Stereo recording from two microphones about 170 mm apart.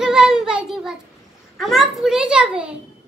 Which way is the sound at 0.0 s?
5° right (ahead or behind).